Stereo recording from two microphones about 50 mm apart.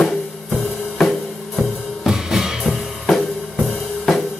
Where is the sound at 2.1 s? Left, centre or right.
Centre.